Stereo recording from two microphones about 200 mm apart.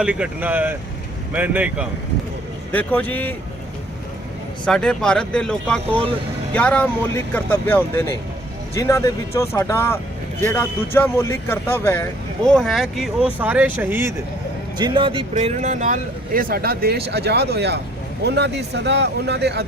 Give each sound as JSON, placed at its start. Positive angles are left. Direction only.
{"t": 0.0, "sound": "speech", "side_deg": -5}
{"t": 2.7, "sound": "speech", "side_deg": 10}
{"t": 4.6, "sound": "speech", "side_deg": 5}
{"t": 12.5, "sound": "speech", "side_deg": 0}
{"t": 14.8, "sound": "a man's voice", "side_deg": -20}